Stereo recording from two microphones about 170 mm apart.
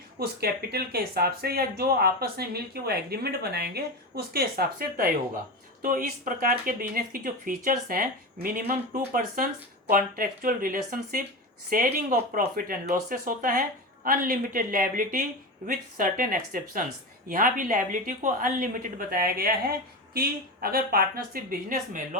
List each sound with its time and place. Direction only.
0.2 s a woman's voice: 65° right (ahead or behind); by 22.2 s 50° right (ahead or behind)